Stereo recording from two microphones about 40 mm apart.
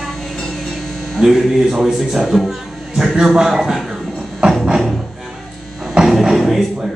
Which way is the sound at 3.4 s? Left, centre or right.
Centre.